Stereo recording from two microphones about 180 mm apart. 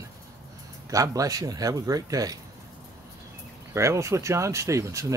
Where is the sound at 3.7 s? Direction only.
15° right (ahead or behind).